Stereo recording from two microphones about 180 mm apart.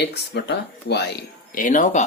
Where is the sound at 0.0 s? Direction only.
70° left (ahead or behind).